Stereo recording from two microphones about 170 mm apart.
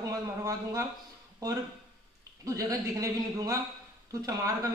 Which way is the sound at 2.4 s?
20° right (ahead or behind).